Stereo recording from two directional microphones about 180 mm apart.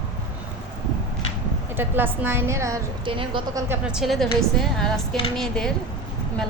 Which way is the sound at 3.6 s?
10° right (ahead or behind).